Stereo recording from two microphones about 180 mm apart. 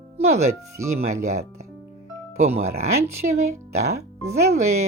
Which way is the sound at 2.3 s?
35° right (ahead or behind).